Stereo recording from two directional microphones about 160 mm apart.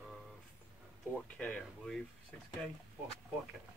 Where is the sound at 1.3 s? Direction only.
5° left (ahead or behind).